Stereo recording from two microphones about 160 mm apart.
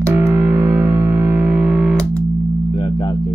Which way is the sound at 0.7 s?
15° right (ahead or behind).